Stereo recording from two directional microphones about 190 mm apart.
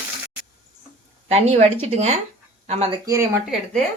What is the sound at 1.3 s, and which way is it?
Speech, 35° right (ahead or behind).